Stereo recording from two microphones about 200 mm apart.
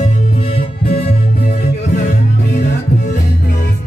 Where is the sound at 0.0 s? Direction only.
30° left (ahead or behind).